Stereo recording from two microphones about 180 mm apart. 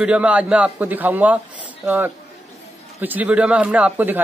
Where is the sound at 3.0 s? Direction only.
10° right (ahead or behind).